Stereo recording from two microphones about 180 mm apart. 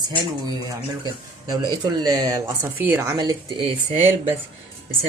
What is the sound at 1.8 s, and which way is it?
Speech, 20° right (ahead or behind).